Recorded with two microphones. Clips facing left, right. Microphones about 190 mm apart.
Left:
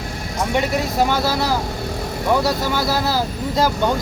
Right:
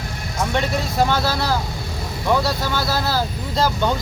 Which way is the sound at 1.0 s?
10° left (ahead or behind).